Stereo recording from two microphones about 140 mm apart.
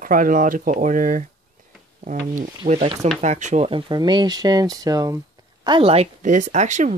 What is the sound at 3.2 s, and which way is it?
Speech, 55° right (ahead or behind).